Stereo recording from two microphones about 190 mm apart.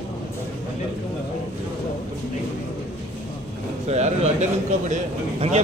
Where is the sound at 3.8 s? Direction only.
35° right (ahead or behind).